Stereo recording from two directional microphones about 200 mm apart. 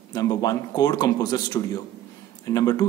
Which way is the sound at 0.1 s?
20° left (ahead or behind).